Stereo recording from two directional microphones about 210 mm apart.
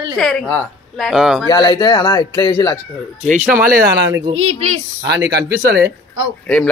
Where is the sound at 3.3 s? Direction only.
40° right (ahead or behind).